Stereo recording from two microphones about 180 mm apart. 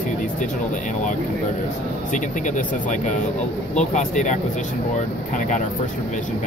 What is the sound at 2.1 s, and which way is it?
Speech, 45° left (ahead or behind).